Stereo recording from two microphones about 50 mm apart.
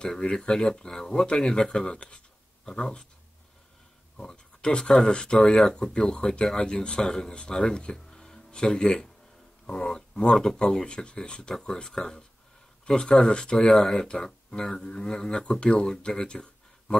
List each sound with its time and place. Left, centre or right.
0.0 s speech: centre
4.2 s speech: centre